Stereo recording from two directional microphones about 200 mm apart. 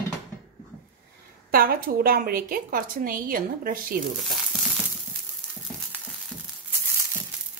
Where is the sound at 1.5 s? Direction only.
50° right (ahead or behind).